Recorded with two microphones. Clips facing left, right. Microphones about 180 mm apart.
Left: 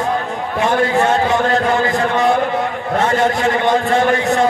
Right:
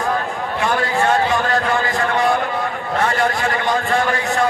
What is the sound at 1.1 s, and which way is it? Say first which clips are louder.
A man's voice: left 2 dB; 20° left (ahead or behind).